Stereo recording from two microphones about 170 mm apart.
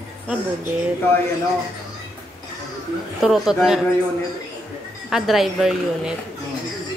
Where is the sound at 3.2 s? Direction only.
Centre (ahead or behind).